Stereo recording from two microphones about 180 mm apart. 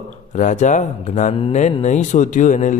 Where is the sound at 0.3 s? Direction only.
45° left (ahead or behind).